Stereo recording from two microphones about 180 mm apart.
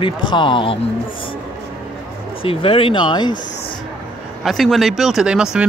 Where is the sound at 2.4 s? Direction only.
30° left (ahead or behind).